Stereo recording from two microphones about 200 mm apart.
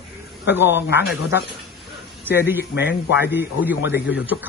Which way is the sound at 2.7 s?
55° left (ahead or behind).